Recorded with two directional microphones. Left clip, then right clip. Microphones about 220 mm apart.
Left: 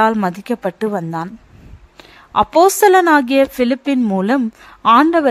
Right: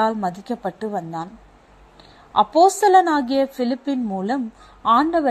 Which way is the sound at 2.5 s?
80° left.